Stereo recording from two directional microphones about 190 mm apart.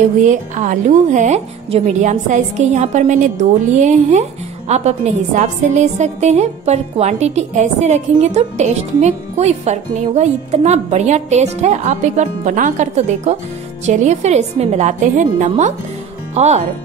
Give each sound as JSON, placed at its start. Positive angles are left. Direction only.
{"t": 0.2, "sound": "a woman's voice", "side_deg": -40}